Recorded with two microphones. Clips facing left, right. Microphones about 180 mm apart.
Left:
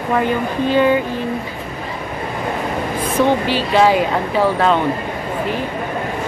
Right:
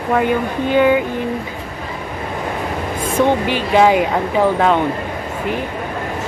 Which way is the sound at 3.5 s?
15° right (ahead or behind).